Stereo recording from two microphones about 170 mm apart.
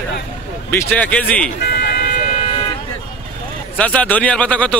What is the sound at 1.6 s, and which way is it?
Vehicle, 65° left (ahead or behind).